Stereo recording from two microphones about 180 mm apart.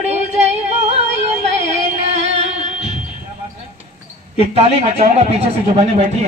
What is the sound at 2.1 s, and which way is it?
Music, 35° right (ahead or behind).